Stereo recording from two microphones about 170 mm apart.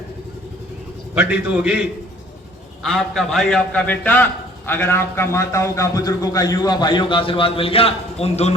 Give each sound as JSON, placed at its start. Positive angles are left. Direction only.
{"t": 1.3, "sound": "a man's voice", "side_deg": -10}
{"t": 2.8, "sound": "a man's voice", "side_deg": 0}